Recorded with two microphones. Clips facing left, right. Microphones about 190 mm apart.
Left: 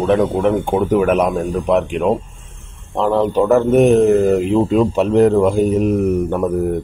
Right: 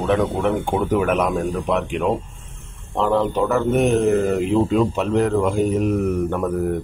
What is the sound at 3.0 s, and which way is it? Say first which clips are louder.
Speech: left 4 dB; 40° left (ahead or behind).